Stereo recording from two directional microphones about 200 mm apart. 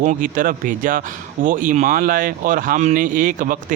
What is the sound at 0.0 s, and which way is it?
Speech, 40° right (ahead or behind).